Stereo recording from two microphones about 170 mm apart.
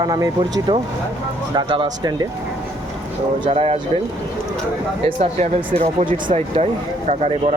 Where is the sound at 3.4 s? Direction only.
35° right (ahead or behind).